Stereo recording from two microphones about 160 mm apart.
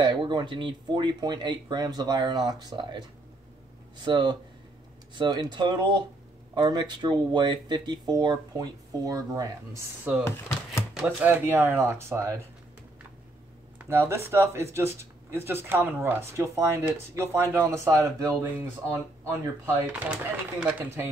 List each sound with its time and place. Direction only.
0.0 s speech: 30° right (ahead or behind)
4.0 s speech: 30° right (ahead or behind)
13.8 s speech: 15° right (ahead or behind)